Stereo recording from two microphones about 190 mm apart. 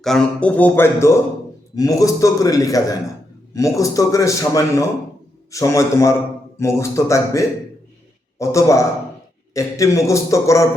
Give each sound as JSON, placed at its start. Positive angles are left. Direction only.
{"t": 0.0, "sound": "a man's voice", "side_deg": 5}